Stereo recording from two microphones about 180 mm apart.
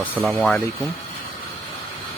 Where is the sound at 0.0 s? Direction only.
10° left (ahead or behind).